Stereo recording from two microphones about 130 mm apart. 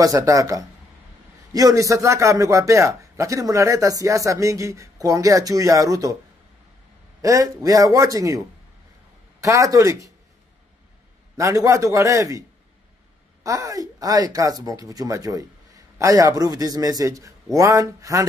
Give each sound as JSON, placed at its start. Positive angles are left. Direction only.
{"t": 0.0, "sound": "speech", "side_deg": -25}
{"t": 7.2, "sound": "speech", "side_deg": -25}
{"t": 9.4, "sound": "speech", "side_deg": -25}
{"t": 11.3, "sound": "speech", "side_deg": -25}